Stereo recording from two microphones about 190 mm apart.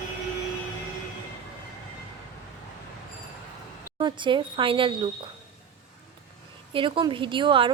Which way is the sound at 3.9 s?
25° right (ahead or behind).